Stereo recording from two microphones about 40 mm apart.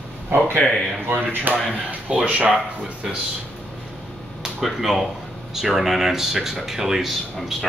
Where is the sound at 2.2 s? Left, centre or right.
Right.